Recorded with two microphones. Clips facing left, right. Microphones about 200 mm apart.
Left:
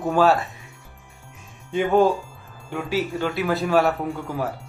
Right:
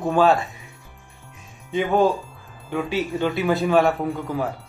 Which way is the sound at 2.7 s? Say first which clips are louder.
Right 1 dB; centre (ahead or behind).